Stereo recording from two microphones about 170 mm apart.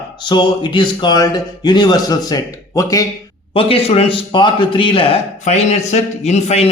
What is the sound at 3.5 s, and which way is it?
A man's voice, 35° left (ahead or behind).